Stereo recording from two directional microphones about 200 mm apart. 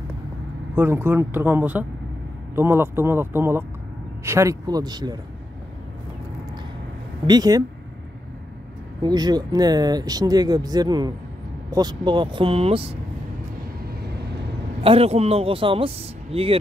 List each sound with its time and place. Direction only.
0.7 s speech: 10° right (ahead or behind)
7.2 s speech: 20° right (ahead or behind)
9.0 s speech: 20° right (ahead or behind)
14.8 s speech: 30° right (ahead or behind)